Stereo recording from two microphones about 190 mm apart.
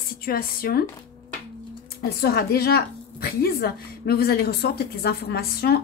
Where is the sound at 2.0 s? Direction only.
55° left (ahead or behind).